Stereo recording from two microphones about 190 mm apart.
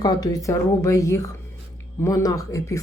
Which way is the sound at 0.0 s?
20° left (ahead or behind).